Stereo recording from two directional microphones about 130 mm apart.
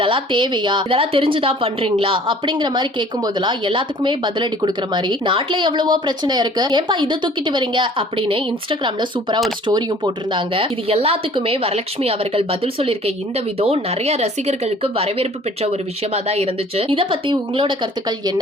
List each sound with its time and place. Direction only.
0.0 s a woman's voice: 40° right (ahead or behind)